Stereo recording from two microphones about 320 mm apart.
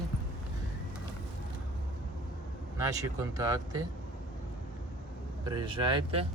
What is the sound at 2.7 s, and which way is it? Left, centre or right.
Speech, centre.